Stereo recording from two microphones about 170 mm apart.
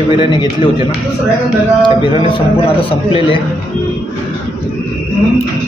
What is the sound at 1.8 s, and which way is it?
A man's voice, 30° left (ahead or behind).